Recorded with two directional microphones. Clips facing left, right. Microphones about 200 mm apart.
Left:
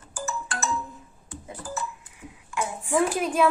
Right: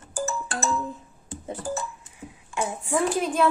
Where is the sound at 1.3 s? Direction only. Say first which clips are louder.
Right 6 dB; 30° right (ahead or behind).